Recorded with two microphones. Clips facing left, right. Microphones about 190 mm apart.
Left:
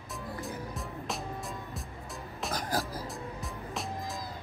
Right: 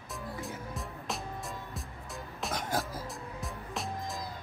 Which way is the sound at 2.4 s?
Centre (ahead or behind).